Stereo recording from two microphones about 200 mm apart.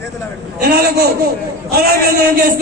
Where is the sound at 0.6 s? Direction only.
50° right (ahead or behind).